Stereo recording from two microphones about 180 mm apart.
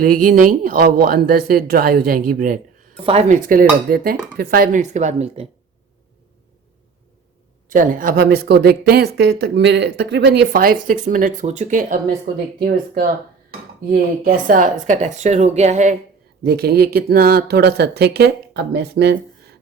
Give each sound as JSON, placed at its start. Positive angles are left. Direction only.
{"t": 0.0, "sound": "speech", "side_deg": -50}
{"t": 3.0, "sound": "a woman's voice", "side_deg": -35}
{"t": 3.4, "sound": "a woman's voice", "side_deg": -50}
{"t": 7.7, "sound": "speech", "side_deg": -50}
{"t": 14.3, "sound": "a woman's voice", "side_deg": -50}
{"t": 16.4, "sound": "speech", "side_deg": -60}